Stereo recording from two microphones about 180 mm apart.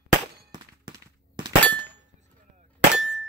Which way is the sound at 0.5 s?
25° right (ahead or behind).